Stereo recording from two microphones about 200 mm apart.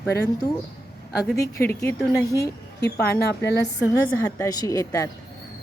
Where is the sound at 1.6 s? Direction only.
10° left (ahead or behind).